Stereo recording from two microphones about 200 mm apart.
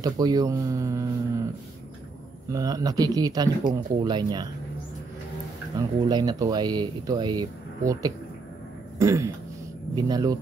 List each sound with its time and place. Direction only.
0.0 s speech: 20° right (ahead or behind)
2.5 s speech: 20° right (ahead or behind)
5.8 s speech: 20° right (ahead or behind)
8.9 s a sound: 15° right (ahead or behind)
9.9 s speech: 20° right (ahead or behind)